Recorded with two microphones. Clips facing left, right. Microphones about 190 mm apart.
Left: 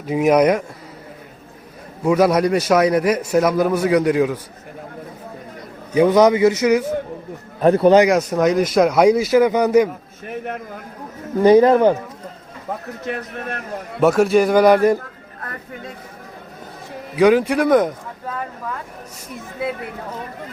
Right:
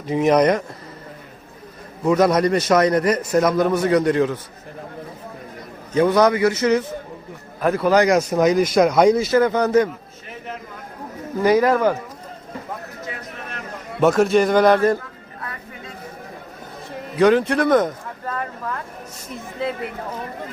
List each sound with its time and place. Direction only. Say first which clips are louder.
0.0 s a man's voice: left 1 dB; 5° left (ahead or behind)
2.0 s a man's voice: left 1 dB; 5° left (ahead or behind)
5.9 s a man's voice: left 3 dB; 15° left (ahead or behind)
7.6 s speech: left 5 dB; 30° left (ahead or behind)
8.0 s a man's voice: even; centre (ahead or behind)
10.2 s a sound: left 7 dB; 55° left (ahead or behind)
11.4 s speech: left 5 dB; 25° left (ahead or behind)
13.1 s a man's voice: left 10 dB; 60° left (ahead or behind)
14.0 s a man's voice: left 1 dB; 5° left (ahead or behind)
14.9 s a sound: left 2 dB; 50° left (ahead or behind)
17.2 s speech: left 2 dB; 10° left (ahead or behind)